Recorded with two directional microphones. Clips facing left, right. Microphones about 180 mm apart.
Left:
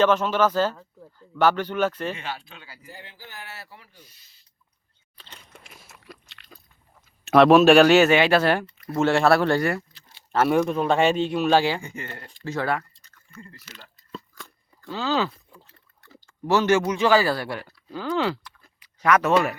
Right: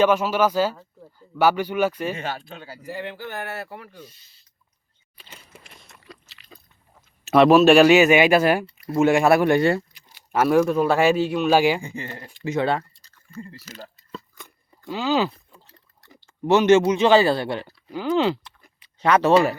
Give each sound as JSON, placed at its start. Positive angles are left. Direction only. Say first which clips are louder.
{"t": 0.0, "sound": "speech", "louder": "right 1 dB", "side_deg": -10}
{"t": 2.1, "sound": "speech", "louder": "right 4 dB", "side_deg": -45}
{"t": 2.8, "sound": "speech", "louder": "right 16 dB", "side_deg": -70}
{"t": 5.1, "sound": "chewing", "louder": "right 1 dB", "side_deg": -10}
{"t": 7.3, "sound": "speech", "louder": "even", "side_deg": 0}
{"t": 10.4, "sound": "a man's voice", "louder": "right 3 dB", "side_deg": 0}
{"t": 14.3, "sound": "a sound", "louder": "left 1 dB", "side_deg": -15}
{"t": 16.0, "sound": "speech", "louder": "right 4 dB", "side_deg": -20}